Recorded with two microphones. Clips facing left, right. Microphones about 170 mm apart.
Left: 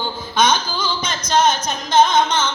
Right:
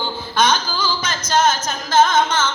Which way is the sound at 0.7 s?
10° right (ahead or behind).